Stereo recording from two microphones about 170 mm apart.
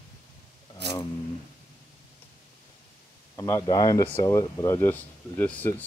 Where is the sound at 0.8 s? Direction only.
80° right.